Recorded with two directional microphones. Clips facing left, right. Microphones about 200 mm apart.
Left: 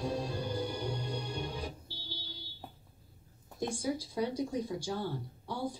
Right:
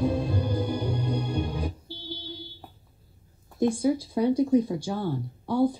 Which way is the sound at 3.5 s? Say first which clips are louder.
Right 11 dB; 55° right (ahead or behind).